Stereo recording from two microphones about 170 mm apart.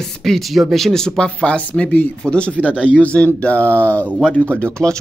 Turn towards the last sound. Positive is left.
turn(degrees=10)  # may be behind; listen again after turning